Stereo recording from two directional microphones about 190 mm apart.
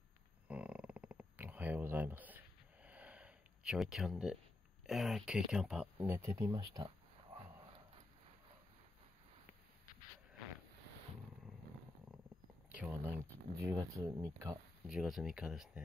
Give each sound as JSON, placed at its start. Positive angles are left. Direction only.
{"t": 0.5, "sound": "a sound", "side_deg": -5}
{"t": 4.8, "sound": "speech", "side_deg": 0}
{"t": 12.7, "sound": "speech", "side_deg": -10}
{"t": 14.9, "sound": "speech", "side_deg": 0}